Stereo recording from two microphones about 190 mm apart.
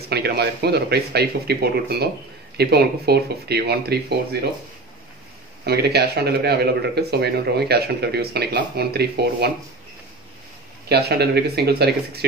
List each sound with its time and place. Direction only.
0.1 s a man's voice: 60° right (ahead or behind)
5.6 s a man's voice: 55° right (ahead or behind)
10.9 s a man's voice: 55° right (ahead or behind)